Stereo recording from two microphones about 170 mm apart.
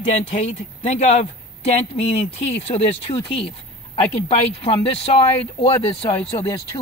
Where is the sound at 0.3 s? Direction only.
40° left (ahead or behind).